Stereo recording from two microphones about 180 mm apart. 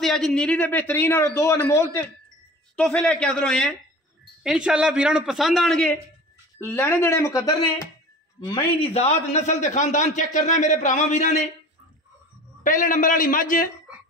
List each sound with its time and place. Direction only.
0.0 s a man's voice: centre (ahead or behind); by 8.6 s 25° left (ahead or behind)
8.9 s speech: 35° left (ahead or behind)
12.6 s a man's voice: 50° left (ahead or behind)